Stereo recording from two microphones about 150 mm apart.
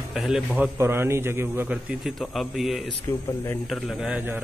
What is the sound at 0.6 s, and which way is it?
A man's voice, 15° right (ahead or behind).